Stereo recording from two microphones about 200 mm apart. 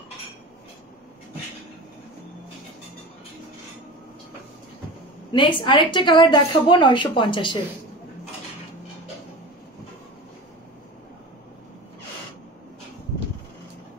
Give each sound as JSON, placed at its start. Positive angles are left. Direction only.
{"t": 5.3, "sound": "a woman's voice", "side_deg": 25}